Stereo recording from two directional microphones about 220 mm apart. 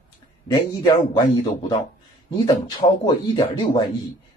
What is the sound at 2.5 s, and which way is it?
Speech, 20° left (ahead or behind).